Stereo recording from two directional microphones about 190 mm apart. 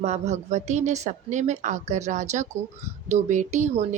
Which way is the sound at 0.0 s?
35° right (ahead or behind).